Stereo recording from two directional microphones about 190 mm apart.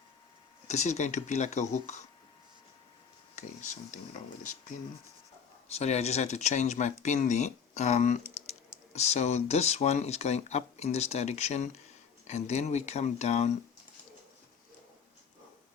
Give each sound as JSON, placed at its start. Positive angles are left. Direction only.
{"t": 0.7, "sound": "speech", "side_deg": 35}
{"t": 3.3, "sound": "speech", "side_deg": 40}
{"t": 5.7, "sound": "speech", "side_deg": 35}